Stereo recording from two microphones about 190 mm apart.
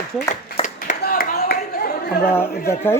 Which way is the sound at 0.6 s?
45° left (ahead or behind).